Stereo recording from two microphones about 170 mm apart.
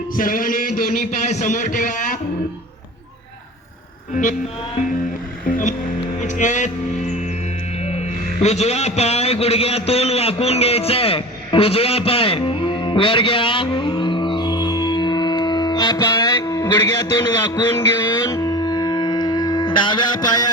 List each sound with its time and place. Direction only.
0.2 s a man's voice: 55° left (ahead or behind)
5.5 s a man's voice: 50° left (ahead or behind)
7.9 s a man's voice: 40° left (ahead or behind); by 20.5 s 25° left (ahead or behind)